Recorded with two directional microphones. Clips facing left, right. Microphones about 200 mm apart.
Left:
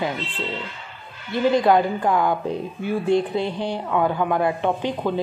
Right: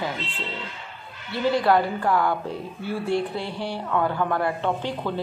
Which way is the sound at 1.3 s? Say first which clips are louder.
Left 3 dB; 20° left (ahead or behind).